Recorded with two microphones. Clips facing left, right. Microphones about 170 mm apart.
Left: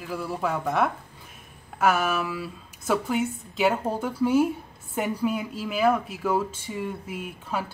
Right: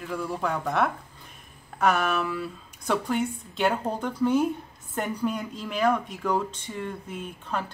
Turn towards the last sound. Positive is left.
turn(degrees=5)  # may be behind; listen again after turning